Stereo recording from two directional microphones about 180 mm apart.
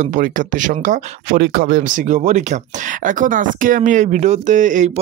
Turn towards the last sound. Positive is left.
turn(degrees=-45)  # may be behind; listen again after turning